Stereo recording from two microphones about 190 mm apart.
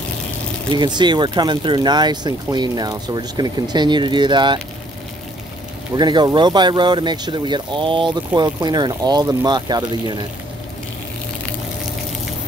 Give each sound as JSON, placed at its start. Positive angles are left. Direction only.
{"t": 0.7, "sound": "speech", "side_deg": -25}
{"t": 5.9, "sound": "speech", "side_deg": -25}